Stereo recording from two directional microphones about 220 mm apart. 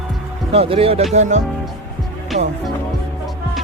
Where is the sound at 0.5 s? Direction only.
25° right (ahead or behind).